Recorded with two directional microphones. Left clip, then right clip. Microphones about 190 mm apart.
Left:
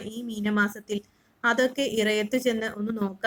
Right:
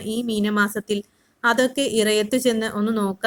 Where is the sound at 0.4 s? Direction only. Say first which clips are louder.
Right 3 dB; 30° right (ahead or behind).